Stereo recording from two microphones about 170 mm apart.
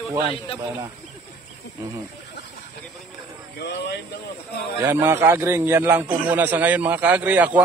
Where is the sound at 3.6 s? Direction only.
80° left.